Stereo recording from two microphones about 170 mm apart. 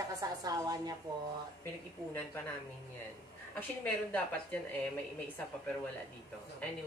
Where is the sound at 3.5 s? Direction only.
10° left (ahead or behind).